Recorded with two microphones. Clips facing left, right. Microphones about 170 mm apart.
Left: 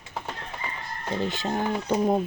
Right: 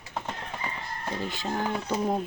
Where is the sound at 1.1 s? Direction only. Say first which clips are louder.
Left 4 dB; 25° left (ahead or behind).